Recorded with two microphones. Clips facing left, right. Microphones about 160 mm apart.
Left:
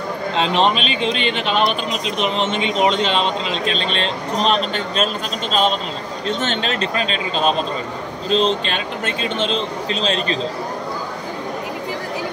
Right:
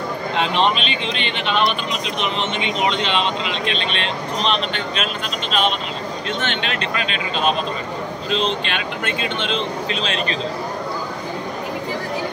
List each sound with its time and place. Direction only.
0.4 s speech: 40° left (ahead or behind)